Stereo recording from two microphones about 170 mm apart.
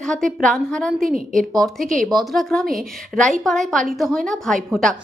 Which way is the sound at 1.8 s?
50° right (ahead or behind).